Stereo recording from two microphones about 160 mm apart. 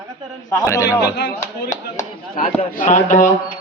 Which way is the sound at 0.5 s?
20° left (ahead or behind).